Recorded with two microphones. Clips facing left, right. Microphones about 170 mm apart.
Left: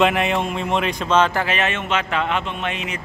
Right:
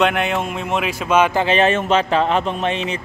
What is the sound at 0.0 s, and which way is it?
Speech, centre (ahead or behind).